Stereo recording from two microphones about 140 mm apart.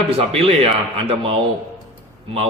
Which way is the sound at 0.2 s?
45° right (ahead or behind).